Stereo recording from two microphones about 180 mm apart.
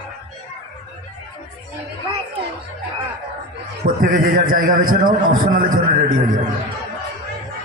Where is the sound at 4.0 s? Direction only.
50° right (ahead or behind).